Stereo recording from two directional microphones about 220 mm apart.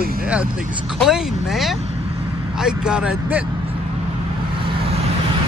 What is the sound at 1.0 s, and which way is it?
Speech, centre (ahead or behind).